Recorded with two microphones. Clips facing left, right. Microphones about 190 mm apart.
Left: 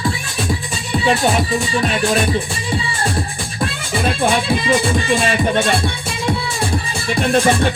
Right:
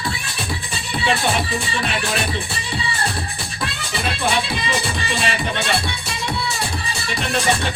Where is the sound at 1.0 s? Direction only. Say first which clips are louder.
Left 5 dB; 45° left (ahead or behind).